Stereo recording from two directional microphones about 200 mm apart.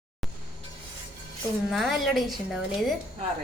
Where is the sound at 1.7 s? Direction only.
Centre (ahead or behind).